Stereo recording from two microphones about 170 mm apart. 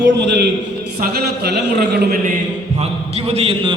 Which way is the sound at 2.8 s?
40° right (ahead or behind).